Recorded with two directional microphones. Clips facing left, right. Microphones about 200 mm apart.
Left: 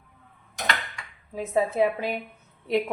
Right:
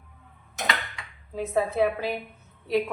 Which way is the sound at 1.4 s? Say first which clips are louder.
Left 1 dB; 15° left (ahead or behind).